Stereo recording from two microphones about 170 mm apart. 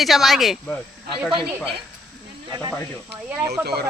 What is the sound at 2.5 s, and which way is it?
Speech, 25° right (ahead or behind).